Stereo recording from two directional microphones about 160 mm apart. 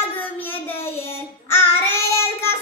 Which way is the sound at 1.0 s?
15° left (ahead or behind).